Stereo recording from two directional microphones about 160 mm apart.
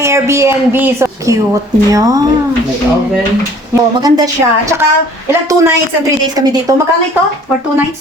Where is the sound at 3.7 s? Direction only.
25° right (ahead or behind).